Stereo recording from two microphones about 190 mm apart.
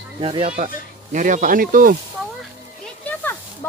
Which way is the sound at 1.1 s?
40° right (ahead or behind).